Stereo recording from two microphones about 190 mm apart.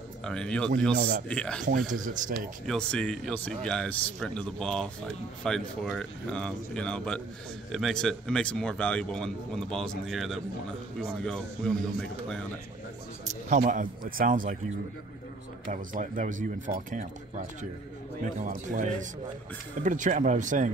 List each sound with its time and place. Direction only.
0.2 s speech: 5° left (ahead or behind)
1.9 s speech: 45° right (ahead or behind)
2.6 s speech: 5° left (ahead or behind)
13.5 s speech: 40° right (ahead or behind)
15.7 s speech: 40° right (ahead or behind)